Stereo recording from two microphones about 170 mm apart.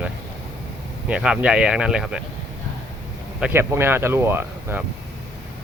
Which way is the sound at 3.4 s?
10° right (ahead or behind).